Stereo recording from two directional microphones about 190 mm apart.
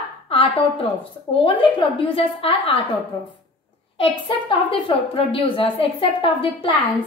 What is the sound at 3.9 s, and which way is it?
A woman's voice, 30° left (ahead or behind).